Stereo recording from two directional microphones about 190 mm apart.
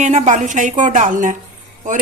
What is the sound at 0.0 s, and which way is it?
Speech, 40° right (ahead or behind).